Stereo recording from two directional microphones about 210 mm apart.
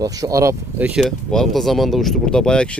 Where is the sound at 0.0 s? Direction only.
15° right (ahead or behind).